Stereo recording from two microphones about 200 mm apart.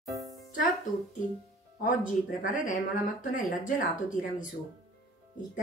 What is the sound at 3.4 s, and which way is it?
Speech, 40° left (ahead or behind).